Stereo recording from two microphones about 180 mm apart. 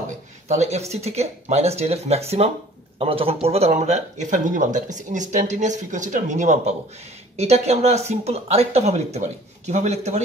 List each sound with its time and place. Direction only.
0.5 s speech: 40° right (ahead or behind)